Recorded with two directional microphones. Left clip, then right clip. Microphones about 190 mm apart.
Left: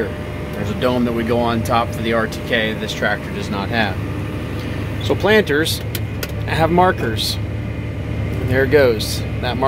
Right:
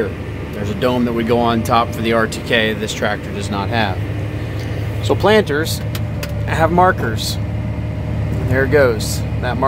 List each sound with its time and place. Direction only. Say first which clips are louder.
0.7 s speech: right 1 dB; 10° right (ahead or behind)
5.0 s speech: right 2 dB; 10° right (ahead or behind)
8.5 s speech: even; centre (ahead or behind)